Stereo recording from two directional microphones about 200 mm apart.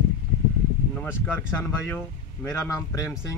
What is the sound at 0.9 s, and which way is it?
Speech, 10° left (ahead or behind).